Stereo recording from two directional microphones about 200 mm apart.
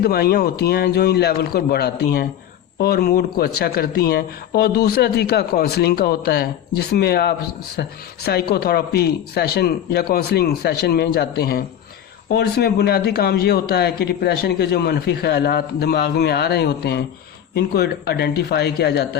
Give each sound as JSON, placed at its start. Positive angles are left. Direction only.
{"t": 0.0, "sound": "a man's voice", "side_deg": 50}